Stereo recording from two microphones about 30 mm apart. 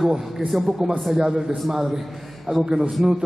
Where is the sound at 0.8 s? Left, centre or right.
Centre.